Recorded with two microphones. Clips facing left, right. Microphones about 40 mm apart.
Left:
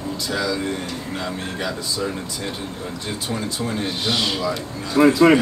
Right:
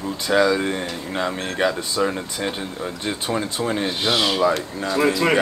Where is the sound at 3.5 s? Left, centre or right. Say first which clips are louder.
Right 2 dB; right.